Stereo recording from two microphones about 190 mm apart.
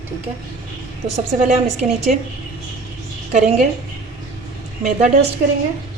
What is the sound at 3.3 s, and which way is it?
Speech, 35° right (ahead or behind).